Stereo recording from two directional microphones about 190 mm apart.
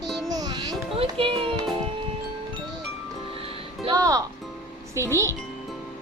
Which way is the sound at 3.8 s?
20° right (ahead or behind).